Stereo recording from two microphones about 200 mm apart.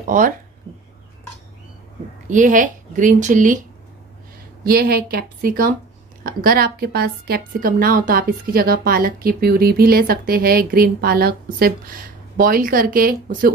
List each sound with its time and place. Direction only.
0.0 s a woman's voice: 45° right (ahead or behind)
2.2 s speech: 40° right (ahead or behind)
4.6 s a woman's voice: 50° right (ahead or behind)